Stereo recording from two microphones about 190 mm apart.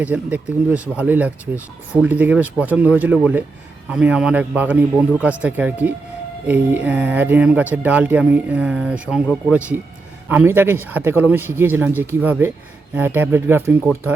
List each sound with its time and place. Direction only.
0.0 s speech: 10° right (ahead or behind)